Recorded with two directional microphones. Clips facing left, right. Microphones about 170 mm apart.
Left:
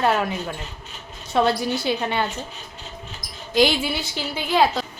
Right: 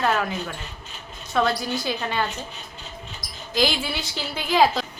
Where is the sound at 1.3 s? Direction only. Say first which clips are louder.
Left 3 dB; 25° left (ahead or behind).